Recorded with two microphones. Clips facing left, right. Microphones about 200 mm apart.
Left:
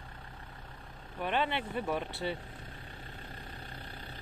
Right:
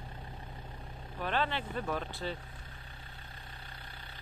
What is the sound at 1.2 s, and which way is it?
Speech, 15° left (ahead or behind).